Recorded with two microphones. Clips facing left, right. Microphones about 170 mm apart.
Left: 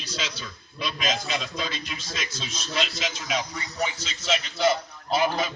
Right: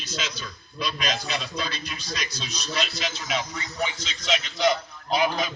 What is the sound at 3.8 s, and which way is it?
A man's voice, 5° left (ahead or behind).